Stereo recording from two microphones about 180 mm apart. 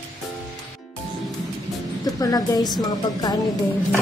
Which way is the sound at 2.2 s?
20° left (ahead or behind).